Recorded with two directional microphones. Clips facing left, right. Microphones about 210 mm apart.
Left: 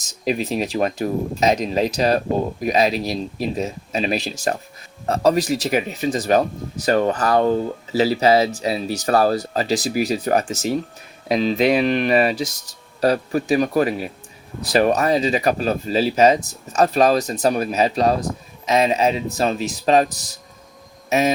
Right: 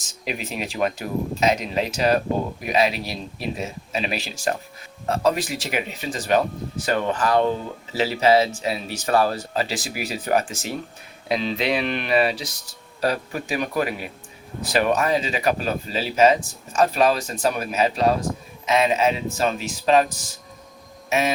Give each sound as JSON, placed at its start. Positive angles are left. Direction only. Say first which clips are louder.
{"t": 0.3, "sound": "speech", "louder": "left 8 dB", "side_deg": 40}